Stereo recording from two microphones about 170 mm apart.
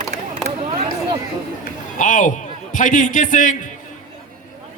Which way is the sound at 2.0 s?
50° left (ahead or behind).